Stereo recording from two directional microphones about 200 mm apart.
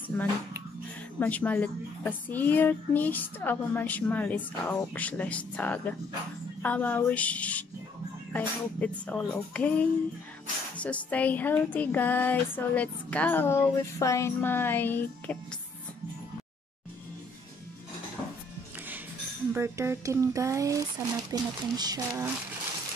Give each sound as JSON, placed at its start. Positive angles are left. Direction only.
{"t": 0.1, "sound": "speech", "side_deg": 10}
{"t": 19.5, "sound": "speech", "side_deg": -15}